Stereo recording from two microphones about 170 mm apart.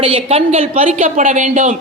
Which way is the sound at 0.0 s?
35° right (ahead or behind).